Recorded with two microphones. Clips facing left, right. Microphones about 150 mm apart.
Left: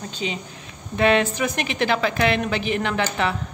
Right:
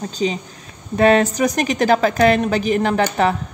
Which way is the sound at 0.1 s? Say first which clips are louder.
Right 8 dB; 40° right (ahead or behind).